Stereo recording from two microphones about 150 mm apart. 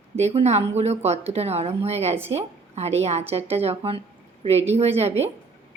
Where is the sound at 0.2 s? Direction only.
45° right (ahead or behind).